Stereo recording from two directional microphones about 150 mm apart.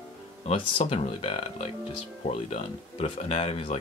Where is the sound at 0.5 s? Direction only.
40° left (ahead or behind).